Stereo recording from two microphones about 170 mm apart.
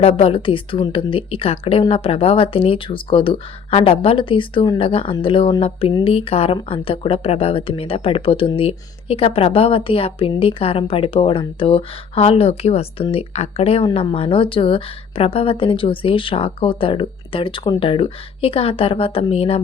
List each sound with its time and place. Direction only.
0.0 s speech: 35° left (ahead or behind)